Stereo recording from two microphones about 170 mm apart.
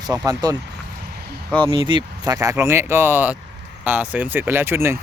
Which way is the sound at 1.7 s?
30° right (ahead or behind).